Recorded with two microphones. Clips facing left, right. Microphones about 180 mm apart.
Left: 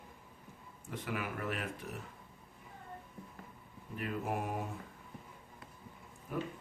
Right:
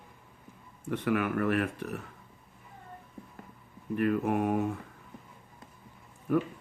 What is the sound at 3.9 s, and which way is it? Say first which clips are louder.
Speech: right 10 dB; 65° right (ahead or behind).